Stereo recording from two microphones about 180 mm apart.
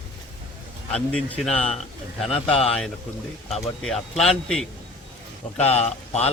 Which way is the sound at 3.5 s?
Centre (ahead or behind).